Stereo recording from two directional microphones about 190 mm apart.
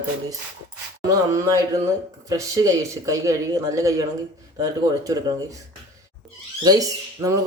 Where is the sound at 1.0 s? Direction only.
15° right (ahead or behind).